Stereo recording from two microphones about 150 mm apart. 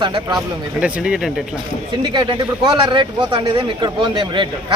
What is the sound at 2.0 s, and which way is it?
Speech, 30° right (ahead or behind).